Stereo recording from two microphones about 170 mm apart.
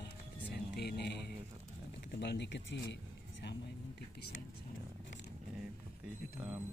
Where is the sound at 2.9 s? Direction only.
90° left.